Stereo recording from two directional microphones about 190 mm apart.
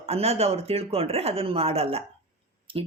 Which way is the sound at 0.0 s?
30° right (ahead or behind).